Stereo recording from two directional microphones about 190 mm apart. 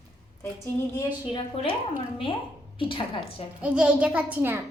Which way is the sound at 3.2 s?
5° right (ahead or behind).